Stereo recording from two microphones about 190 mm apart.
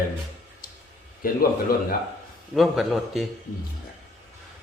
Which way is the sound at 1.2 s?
50° left (ahead or behind).